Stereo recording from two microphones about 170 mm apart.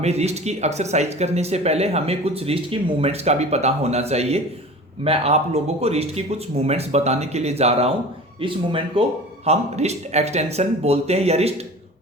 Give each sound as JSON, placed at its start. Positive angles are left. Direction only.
{"t": 0.0, "sound": "speech", "side_deg": -40}